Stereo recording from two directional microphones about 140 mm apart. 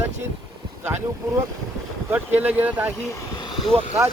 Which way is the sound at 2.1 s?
10° right (ahead or behind).